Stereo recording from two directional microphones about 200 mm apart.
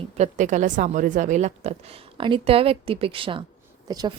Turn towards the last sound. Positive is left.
turn(degrees=-20)  # may be behind; listen again after turning